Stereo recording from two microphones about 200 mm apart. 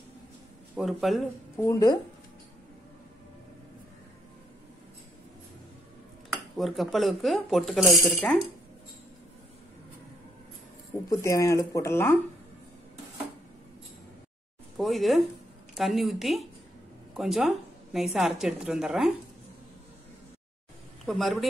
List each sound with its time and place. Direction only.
0.7 s speech: centre (ahead or behind)
1.6 s speech: 15° left (ahead or behind)
6.3 s speech: centre (ahead or behind)
11.1 s speech: 15° left (ahead or behind)
14.8 s speech: centre (ahead or behind)
21.0 s speech: centre (ahead or behind)